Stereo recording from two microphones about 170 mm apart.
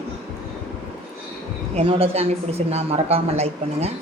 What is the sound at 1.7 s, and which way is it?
A woman's voice, 35° right (ahead or behind).